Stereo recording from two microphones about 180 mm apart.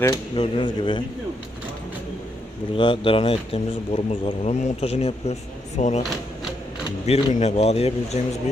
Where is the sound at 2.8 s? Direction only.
30° left (ahead or behind).